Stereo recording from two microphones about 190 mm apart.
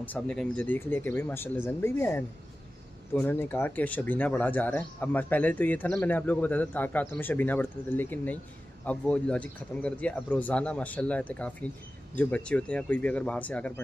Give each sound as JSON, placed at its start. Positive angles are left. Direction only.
{"t": 0.0, "sound": "speech", "side_deg": 5}